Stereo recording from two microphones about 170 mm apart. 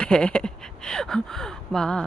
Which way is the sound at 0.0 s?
5° left (ahead or behind).